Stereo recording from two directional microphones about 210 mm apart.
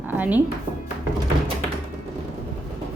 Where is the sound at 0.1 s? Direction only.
10° right (ahead or behind).